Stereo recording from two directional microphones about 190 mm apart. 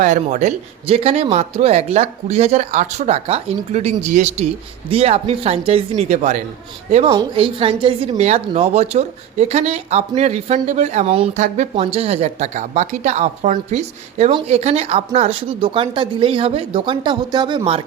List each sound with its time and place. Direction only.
0.0 s speech: 40° right (ahead or behind)
11.4 s speech: 40° right (ahead or behind)